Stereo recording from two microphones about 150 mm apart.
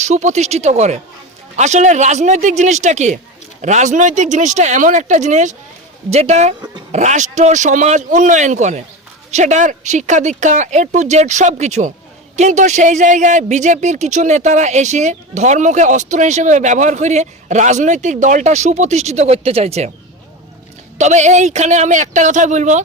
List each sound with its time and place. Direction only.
0.0 s speech: 50° right (ahead or behind)
21.0 s speech: 50° right (ahead or behind)